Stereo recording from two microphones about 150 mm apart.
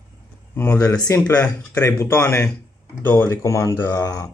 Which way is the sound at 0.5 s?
15° left (ahead or behind).